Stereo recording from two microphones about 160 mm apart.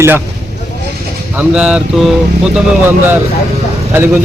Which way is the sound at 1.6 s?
5° right (ahead or behind).